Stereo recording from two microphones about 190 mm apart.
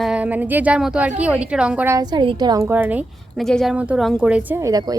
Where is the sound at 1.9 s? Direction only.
20° right (ahead or behind).